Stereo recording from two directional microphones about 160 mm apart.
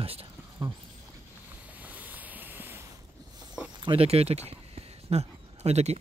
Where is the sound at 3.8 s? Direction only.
35° right (ahead or behind).